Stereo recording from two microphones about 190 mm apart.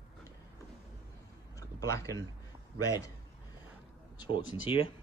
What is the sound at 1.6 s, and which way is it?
Speech, 15° left (ahead or behind).